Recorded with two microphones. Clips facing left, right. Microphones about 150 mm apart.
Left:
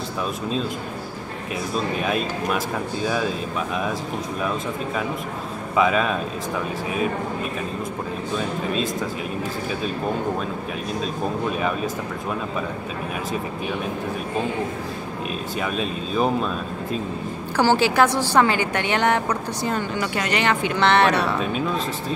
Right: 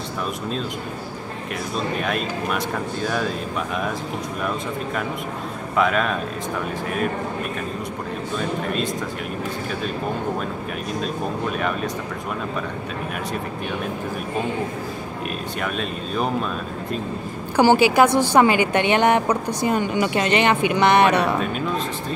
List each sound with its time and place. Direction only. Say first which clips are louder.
5.8 s speech: left 1 dB; 5° left (ahead or behind)
15.6 s speech: left 1 dB; 5° left (ahead or behind)
17.6 s a woman's voice: right 3 dB; 15° right (ahead or behind)